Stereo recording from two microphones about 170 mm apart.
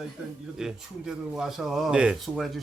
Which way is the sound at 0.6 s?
5° right (ahead or behind).